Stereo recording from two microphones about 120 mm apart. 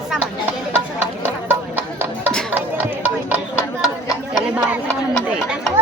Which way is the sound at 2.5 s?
15° right (ahead or behind).